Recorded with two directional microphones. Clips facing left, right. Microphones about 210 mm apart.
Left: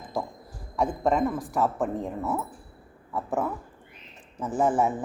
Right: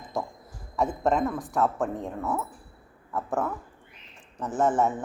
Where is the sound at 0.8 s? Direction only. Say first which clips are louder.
Left 1 dB; centre (ahead or behind).